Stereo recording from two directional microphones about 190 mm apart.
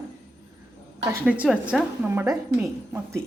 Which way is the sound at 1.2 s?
5° right (ahead or behind).